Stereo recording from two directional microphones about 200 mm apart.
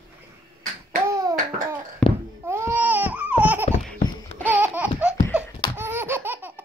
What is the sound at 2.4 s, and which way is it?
Baby cry, 15° right (ahead or behind).